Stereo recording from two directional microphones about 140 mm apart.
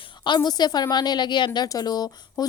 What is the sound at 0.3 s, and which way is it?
A woman's voice, 30° left (ahead or behind).